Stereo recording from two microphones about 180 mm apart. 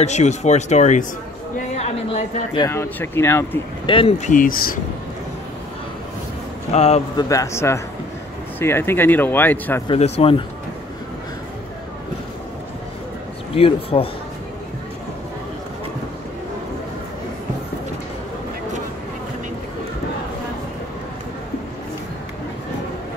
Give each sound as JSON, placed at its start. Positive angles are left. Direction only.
{"t": 0.0, "sound": "speech", "side_deg": 40}
{"t": 1.8, "sound": "a sound", "side_deg": 35}
{"t": 2.7, "sound": "speech", "side_deg": 15}
{"t": 3.8, "sound": "speech", "side_deg": 30}
{"t": 4.2, "sound": "speech", "side_deg": 45}
{"t": 6.7, "sound": "speech", "side_deg": 35}
{"t": 7.2, "sound": "speech", "side_deg": 20}
{"t": 9.8, "sound": "speech", "side_deg": 35}
{"t": 13.6, "sound": "speech", "side_deg": 30}